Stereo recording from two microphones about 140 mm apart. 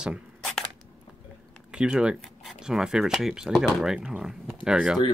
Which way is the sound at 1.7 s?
5° right (ahead or behind).